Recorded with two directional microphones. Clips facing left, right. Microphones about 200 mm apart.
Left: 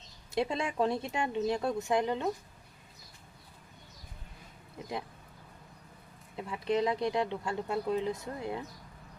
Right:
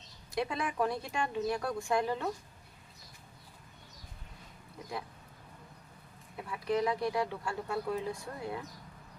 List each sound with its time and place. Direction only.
0.3 s speech: 25° left (ahead or behind)
6.3 s speech: 25° left (ahead or behind)